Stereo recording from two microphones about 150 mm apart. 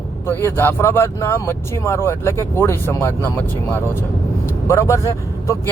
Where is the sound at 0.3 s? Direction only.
15° left (ahead or behind).